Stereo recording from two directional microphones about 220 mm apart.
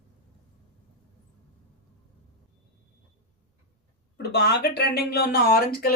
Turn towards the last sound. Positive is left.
turn(degrees=45)  # may be behind; listen again after turning